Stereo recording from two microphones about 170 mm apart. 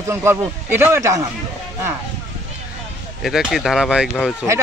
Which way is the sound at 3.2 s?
Centre (ahead or behind).